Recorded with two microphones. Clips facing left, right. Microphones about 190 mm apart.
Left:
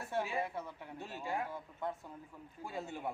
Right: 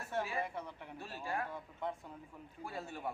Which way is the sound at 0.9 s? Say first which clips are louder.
Left 1 dB; 20° left (ahead or behind).